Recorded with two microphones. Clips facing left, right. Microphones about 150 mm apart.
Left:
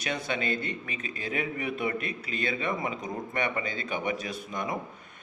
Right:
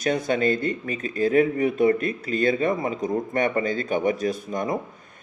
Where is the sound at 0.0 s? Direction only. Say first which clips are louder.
Right 9 dB; 45° right (ahead or behind).